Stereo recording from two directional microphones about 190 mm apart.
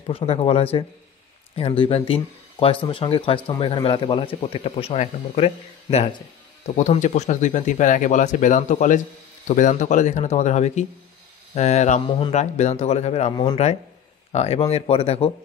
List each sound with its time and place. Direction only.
0.0 s speech: 30° left (ahead or behind)
13.3 s speech: 20° left (ahead or behind)
14.3 s speech: 35° left (ahead or behind)